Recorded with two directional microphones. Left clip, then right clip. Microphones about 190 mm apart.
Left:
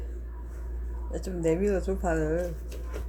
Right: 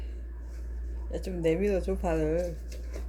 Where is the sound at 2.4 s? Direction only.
15° left (ahead or behind).